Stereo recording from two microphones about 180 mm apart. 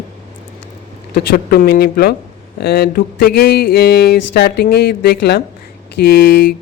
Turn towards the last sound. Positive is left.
turn(degrees=55)  # may be behind; listen again after turning